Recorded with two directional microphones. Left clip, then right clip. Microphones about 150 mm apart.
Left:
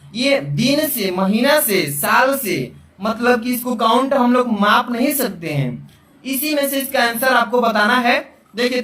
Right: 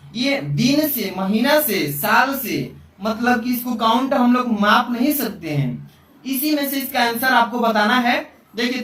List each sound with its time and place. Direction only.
0.1 s speech: 45° left (ahead or behind)